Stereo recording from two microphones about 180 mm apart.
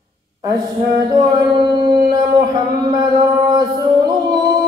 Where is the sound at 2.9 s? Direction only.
25° right (ahead or behind).